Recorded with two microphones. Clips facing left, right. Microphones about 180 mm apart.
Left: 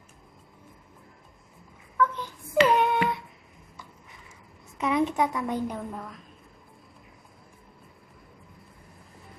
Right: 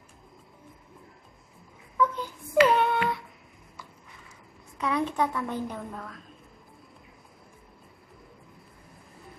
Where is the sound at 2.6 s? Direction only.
20° left (ahead or behind).